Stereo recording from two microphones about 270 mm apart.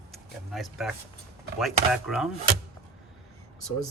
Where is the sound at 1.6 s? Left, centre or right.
Centre.